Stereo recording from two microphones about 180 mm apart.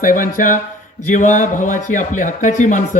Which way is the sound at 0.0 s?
50° left (ahead or behind).